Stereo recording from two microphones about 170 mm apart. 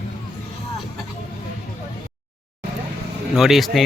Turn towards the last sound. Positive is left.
turn(degrees=0)  # may be behind; listen again after turning